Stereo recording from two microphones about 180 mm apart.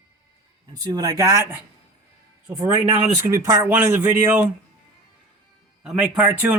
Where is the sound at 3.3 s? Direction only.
15° right (ahead or behind).